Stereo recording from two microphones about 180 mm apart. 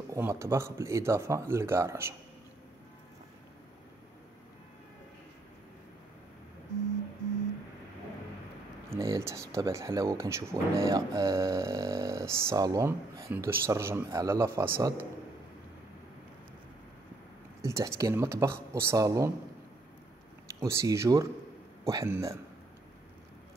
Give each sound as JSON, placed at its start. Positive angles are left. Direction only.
{"t": 0.1, "sound": "speech", "side_deg": -15}
{"t": 8.9, "sound": "speech", "side_deg": -15}
{"t": 17.6, "sound": "speech", "side_deg": -15}
{"t": 20.6, "sound": "speech", "side_deg": -15}